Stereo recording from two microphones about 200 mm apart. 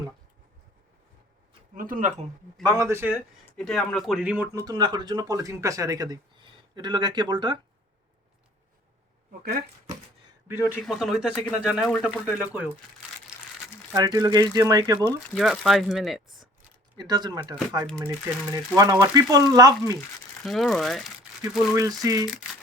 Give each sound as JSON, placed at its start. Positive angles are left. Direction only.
{"t": 1.7, "sound": "speech", "side_deg": -45}
{"t": 2.6, "sound": "speech", "side_deg": -15}
{"t": 3.6, "sound": "speech", "side_deg": 0}
{"t": 4.6, "sound": "speech", "side_deg": -20}
{"t": 9.4, "sound": "speech", "side_deg": -50}
{"t": 10.5, "sound": "speech", "side_deg": -5}
{"t": 13.9, "sound": "speech", "side_deg": -20}
{"t": 15.4, "sound": "speech", "side_deg": 0}
{"t": 17.0, "sound": "speech", "side_deg": -20}
{"t": 20.4, "sound": "speech", "side_deg": 0}
{"t": 22.0, "sound": "speech", "side_deg": -20}